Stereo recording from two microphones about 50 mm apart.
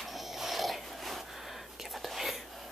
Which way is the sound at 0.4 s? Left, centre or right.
Centre.